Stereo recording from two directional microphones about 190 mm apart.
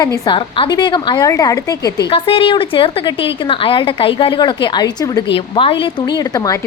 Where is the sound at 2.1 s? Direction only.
30° left (ahead or behind).